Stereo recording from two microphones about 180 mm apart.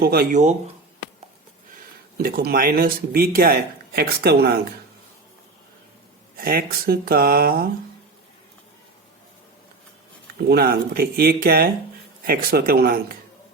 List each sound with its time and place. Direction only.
0.0 s speech: 55° right (ahead or behind)
2.1 s speech: 55° right (ahead or behind)
6.3 s speech: 55° right (ahead or behind)
10.5 s speech: 55° right (ahead or behind)